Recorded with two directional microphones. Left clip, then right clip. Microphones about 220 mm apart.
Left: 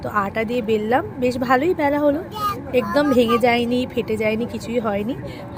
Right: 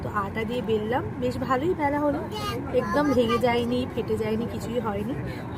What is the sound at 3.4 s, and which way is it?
Speech, 30° left (ahead or behind).